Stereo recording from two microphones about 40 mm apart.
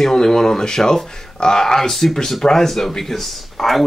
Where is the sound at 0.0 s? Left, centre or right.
Centre.